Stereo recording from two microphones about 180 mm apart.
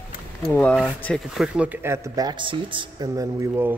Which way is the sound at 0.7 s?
5° left (ahead or behind).